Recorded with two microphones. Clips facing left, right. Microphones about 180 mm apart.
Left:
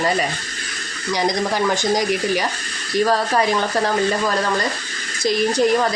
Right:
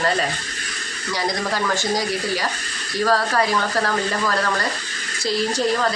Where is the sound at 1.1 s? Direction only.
15° left (ahead or behind).